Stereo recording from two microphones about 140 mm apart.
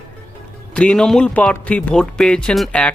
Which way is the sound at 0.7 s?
5° left (ahead or behind).